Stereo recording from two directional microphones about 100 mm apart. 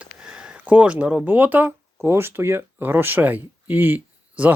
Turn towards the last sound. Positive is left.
turn(degrees=-20)  # may be behind; listen again after turning